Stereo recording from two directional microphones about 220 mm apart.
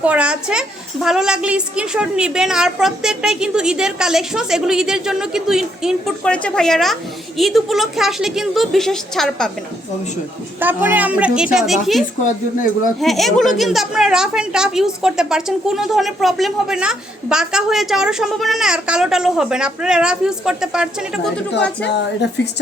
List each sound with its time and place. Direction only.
0.0 s a woman's voice: 5° right (ahead or behind)
10.6 s a woman's voice: 10° right (ahead or behind)
21.8 s a woman's voice: 50° left (ahead or behind)